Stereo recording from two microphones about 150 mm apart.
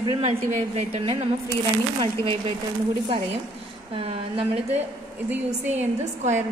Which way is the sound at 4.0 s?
40° right (ahead or behind).